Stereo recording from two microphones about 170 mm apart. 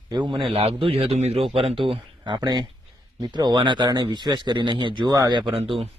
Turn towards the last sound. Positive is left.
turn(degrees=-35)  # may be behind; listen again after turning